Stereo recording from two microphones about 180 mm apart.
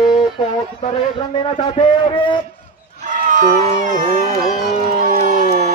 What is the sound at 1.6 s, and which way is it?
Speech, 25° left (ahead or behind).